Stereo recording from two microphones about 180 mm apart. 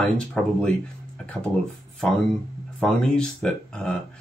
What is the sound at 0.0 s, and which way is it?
Speech, 5° left (ahead or behind).